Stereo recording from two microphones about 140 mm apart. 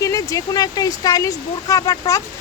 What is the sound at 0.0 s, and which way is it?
Speech, 25° left (ahead or behind).